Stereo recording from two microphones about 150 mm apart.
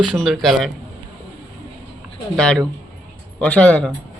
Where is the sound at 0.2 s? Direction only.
Centre (ahead or behind).